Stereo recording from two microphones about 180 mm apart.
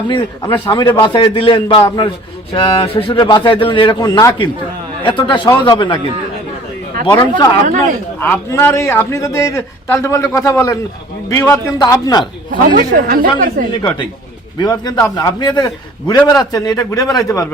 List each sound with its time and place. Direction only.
0.5 s a man's voice: 25° left (ahead or behind)
7.1 s a man's voice: 20° left (ahead or behind)
12.5 s a man's voice: 45° right (ahead or behind)
14.6 s a man's voice: 20° left (ahead or behind)